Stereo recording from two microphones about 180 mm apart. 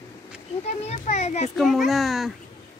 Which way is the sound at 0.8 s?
40° left (ahead or behind).